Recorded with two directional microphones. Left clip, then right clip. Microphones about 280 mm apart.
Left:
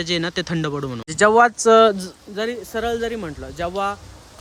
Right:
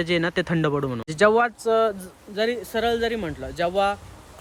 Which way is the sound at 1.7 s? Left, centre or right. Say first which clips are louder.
Left 9 dB; left.